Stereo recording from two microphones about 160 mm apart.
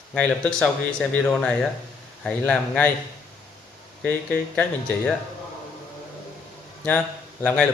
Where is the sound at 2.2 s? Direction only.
5° left (ahead or behind).